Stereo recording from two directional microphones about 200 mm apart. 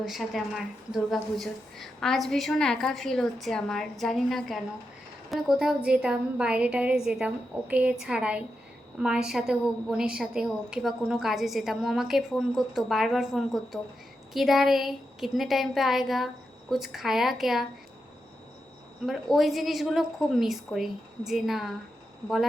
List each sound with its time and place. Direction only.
0.0 s a woman's voice: centre (ahead or behind)
19.0 s a woman's voice: centre (ahead or behind)